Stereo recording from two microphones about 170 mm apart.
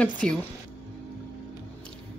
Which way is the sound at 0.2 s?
5° left (ahead or behind).